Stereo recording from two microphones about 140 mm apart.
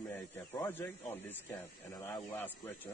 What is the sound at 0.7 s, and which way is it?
Speech, 15° left (ahead or behind).